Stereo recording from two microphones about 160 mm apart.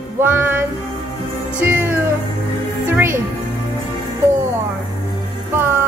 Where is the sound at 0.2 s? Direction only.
15° right (ahead or behind).